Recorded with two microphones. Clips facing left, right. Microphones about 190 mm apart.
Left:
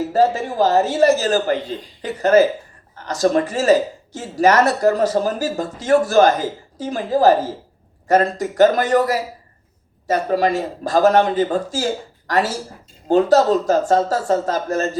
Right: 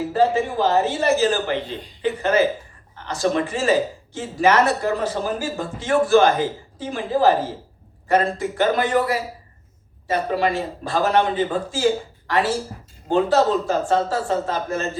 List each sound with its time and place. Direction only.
0.1 s a man's voice: 40° left (ahead or behind)